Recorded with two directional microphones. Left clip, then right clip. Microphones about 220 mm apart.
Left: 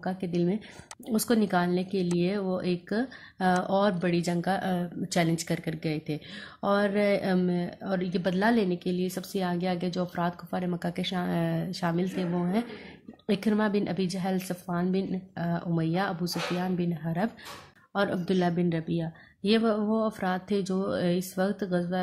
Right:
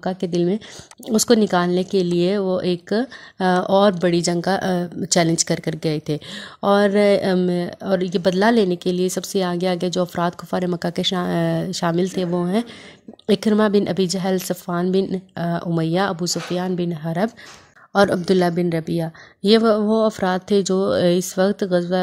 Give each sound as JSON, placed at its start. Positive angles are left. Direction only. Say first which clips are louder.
{"t": 0.0, "sound": "a woman's voice", "louder": "right 9 dB", "side_deg": -40}